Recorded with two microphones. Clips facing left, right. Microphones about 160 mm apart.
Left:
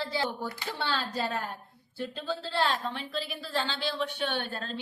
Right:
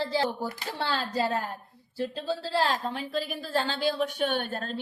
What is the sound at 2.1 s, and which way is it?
A woman's voice, 35° right (ahead or behind).